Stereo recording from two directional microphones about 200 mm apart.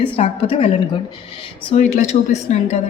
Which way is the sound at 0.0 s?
25° left (ahead or behind).